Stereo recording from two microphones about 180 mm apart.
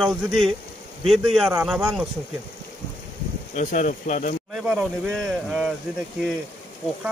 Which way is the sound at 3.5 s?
40° left (ahead or behind).